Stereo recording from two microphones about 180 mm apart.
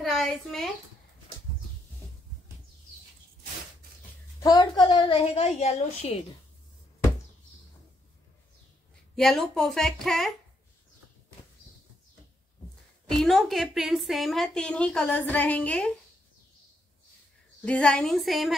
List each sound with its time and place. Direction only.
0.0 s a woman's voice: centre (ahead or behind)
4.4 s a woman's voice: 20° left (ahead or behind); by 6.2 s 35° left (ahead or behind)
9.1 s a woman's voice: centre (ahead or behind)
13.0 s a woman's voice: centre (ahead or behind)
17.6 s a woman's voice: 5° left (ahead or behind)